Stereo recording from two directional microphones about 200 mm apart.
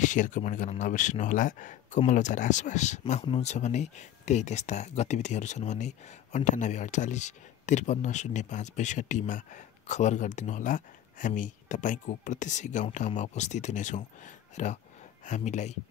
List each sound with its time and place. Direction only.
0.0 s speech: 40° left (ahead or behind)